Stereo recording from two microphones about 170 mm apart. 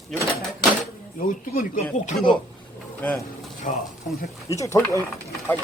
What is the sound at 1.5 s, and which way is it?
Speech, 50° left (ahead or behind).